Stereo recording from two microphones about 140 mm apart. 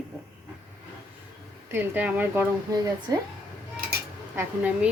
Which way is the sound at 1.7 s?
15° right (ahead or behind).